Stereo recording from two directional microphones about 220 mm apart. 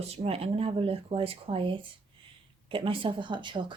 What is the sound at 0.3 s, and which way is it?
Speech, 25° right (ahead or behind).